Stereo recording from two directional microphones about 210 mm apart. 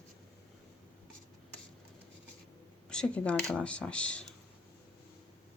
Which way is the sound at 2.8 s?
5° left (ahead or behind).